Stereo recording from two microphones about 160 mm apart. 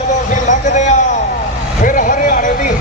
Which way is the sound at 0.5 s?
50° left (ahead or behind).